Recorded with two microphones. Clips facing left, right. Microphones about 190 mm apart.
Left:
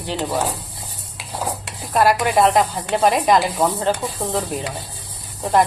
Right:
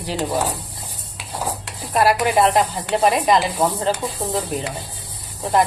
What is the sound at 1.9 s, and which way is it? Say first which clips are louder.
Speech: even; centre (ahead or behind).